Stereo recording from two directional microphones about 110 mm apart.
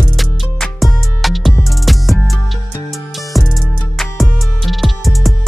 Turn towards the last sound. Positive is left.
turn(degrees=0)  # may be behind; listen again after turning